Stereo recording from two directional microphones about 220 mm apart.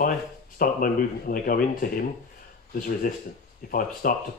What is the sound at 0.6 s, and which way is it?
Speech, 40° left (ahead or behind).